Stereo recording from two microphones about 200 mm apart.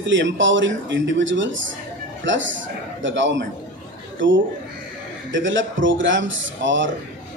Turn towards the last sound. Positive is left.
turn(degrees=-65)  # may be behind; listen again after turning